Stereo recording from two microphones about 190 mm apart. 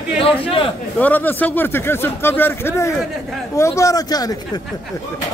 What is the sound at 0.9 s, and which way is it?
Speech, 10° left (ahead or behind).